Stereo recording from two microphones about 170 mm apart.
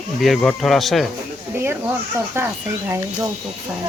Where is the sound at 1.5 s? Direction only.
15° right (ahead or behind).